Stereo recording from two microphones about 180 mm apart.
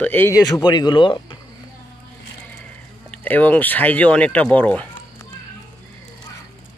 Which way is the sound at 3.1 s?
10° left (ahead or behind).